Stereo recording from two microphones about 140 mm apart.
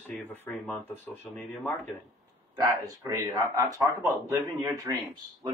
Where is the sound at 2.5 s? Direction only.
25° right (ahead or behind).